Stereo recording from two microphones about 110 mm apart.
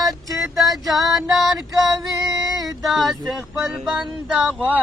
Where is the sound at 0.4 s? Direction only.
Centre (ahead or behind).